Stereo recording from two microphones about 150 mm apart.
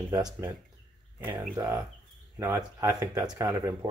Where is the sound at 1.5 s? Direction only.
25° right (ahead or behind).